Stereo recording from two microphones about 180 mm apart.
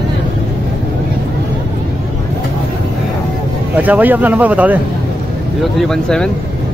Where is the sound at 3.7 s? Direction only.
10° right (ahead or behind).